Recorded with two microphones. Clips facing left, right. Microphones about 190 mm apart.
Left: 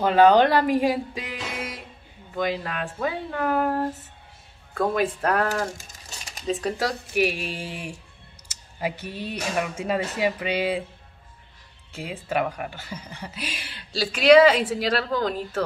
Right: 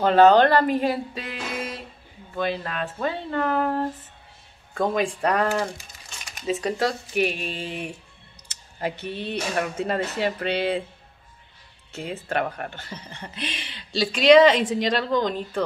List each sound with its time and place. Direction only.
0.0 s speech: 10° left (ahead or behind)
5.8 s a sound: 45° left (ahead or behind)
6.4 s speech: centre (ahead or behind)
8.7 s speech: 10° left (ahead or behind)
11.9 s speech: 10° left (ahead or behind)